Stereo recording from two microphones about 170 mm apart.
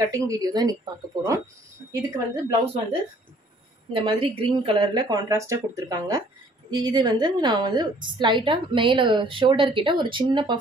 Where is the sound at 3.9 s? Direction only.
30° right (ahead or behind).